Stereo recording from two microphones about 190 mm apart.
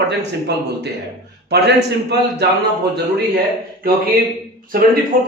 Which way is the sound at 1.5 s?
60° right (ahead or behind).